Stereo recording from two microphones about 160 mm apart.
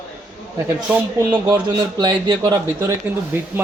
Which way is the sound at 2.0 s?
25° right (ahead or behind).